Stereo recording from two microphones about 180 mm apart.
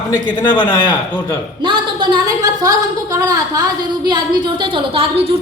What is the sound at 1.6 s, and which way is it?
A woman's voice, 25° right (ahead or behind).